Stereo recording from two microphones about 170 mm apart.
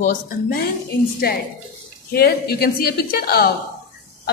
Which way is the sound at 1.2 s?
65° left (ahead or behind).